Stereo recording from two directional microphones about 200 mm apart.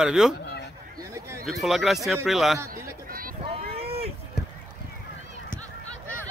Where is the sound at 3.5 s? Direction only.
30° right (ahead or behind).